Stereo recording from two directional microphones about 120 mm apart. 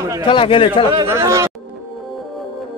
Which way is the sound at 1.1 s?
25° right (ahead or behind).